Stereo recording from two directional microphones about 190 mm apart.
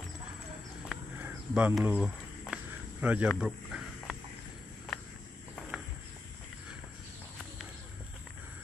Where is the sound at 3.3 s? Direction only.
Centre (ahead or behind).